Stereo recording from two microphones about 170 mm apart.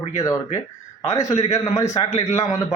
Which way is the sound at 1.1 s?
20° left (ahead or behind).